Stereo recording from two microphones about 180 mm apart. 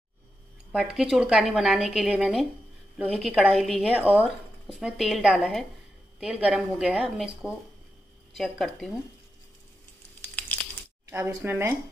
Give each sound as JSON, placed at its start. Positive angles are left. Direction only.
{"t": 0.7, "sound": "speech", "side_deg": 0}
{"t": 11.1, "sound": "speech", "side_deg": -15}